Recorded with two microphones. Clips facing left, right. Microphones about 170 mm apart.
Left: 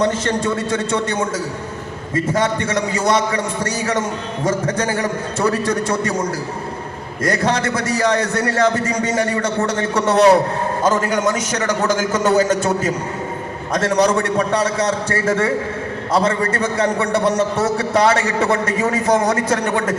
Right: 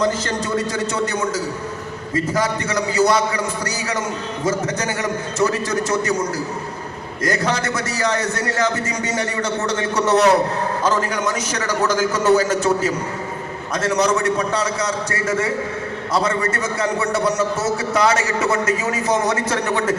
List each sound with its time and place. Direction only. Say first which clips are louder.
0.0 s a man's voice: left 3 dB; 25° left (ahead or behind)
2.3 s a man's voice: left 4 dB; 25° left (ahead or behind)
7.3 s a man's voice: left 3 dB; 30° left (ahead or behind)
11.9 s a man's voice: right 2 dB; 25° left (ahead or behind)
13.8 s a man's voice: left 2 dB; 30° left (ahead or behind)
16.4 s a man's voice: left 3 dB; 35° left (ahead or behind)
17.7 s a man's voice: left 3 dB; 30° left (ahead or behind)